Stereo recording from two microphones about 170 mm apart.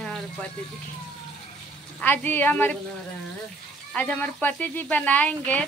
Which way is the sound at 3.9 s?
10° left (ahead or behind).